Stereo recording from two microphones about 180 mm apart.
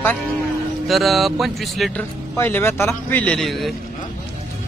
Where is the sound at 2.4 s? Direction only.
10° left (ahead or behind).